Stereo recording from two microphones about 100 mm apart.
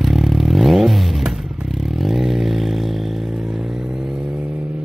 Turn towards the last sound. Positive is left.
turn(degrees=0)  # may be behind; listen again after turning